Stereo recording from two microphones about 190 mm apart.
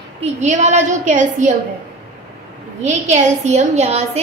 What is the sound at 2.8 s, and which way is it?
A woman's voice, 35° right (ahead or behind).